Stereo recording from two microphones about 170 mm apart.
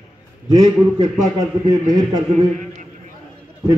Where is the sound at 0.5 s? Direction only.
20° right (ahead or behind).